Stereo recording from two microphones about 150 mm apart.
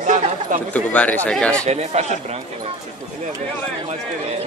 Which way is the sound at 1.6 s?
50° right (ahead or behind).